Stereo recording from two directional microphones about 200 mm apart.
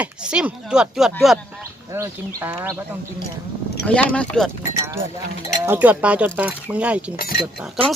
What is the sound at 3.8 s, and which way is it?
Speech, 5° left (ahead or behind).